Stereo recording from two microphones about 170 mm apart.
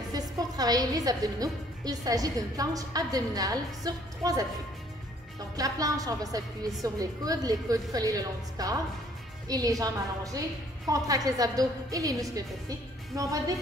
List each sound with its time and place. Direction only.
0.1 s a woman's voice: 20° right (ahead or behind)
5.6 s a woman's voice: 20° right (ahead or behind)